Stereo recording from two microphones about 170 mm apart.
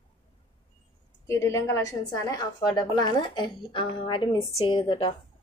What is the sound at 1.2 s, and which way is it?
A woman's voice, 15° left (ahead or behind).